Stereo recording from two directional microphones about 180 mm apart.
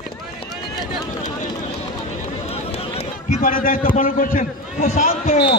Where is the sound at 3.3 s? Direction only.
50° left (ahead or behind).